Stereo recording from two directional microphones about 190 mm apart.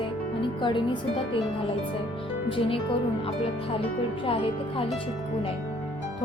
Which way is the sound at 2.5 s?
30° left (ahead or behind).